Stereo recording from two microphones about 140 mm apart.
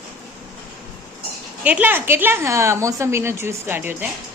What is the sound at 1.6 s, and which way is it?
A woman's voice, 10° right (ahead or behind).